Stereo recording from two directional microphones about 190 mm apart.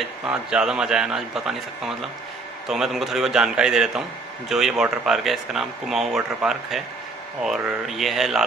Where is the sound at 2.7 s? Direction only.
Centre (ahead or behind).